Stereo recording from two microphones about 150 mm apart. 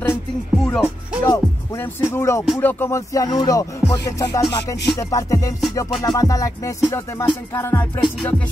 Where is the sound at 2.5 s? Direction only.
15° left (ahead or behind).